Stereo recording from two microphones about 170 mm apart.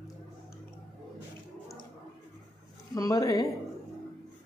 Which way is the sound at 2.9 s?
20° left (ahead or behind).